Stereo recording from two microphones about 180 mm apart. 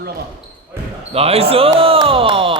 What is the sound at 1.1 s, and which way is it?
Speech, 35° right (ahead or behind).